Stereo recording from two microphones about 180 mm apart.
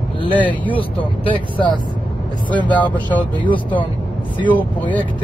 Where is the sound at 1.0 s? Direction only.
30° left (ahead or behind).